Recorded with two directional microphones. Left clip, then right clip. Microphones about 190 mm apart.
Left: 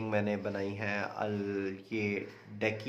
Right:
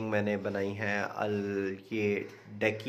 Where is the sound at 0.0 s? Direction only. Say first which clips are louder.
Right 2 dB; 15° right (ahead or behind).